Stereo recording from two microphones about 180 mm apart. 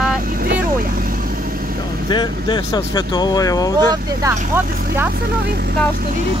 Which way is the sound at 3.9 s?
15° right (ahead or behind).